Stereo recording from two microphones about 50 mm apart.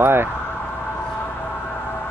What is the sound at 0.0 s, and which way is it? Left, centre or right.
Speech, right.